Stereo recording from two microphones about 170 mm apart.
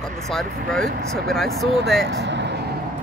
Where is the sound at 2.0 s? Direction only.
90° right.